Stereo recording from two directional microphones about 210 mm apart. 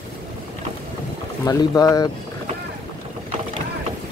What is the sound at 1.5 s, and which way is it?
Speech, 15° left (ahead or behind).